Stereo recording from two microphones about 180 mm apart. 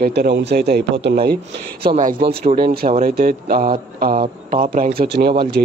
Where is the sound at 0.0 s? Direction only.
65° right (ahead or behind).